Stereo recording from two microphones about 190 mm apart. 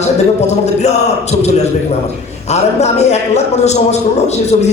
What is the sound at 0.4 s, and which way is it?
A man's voice, 35° left (ahead or behind).